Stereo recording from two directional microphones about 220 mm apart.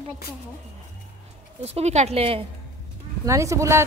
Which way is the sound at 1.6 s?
30° right (ahead or behind).